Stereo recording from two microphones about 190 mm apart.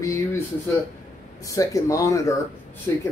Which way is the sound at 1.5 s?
15° left (ahead or behind).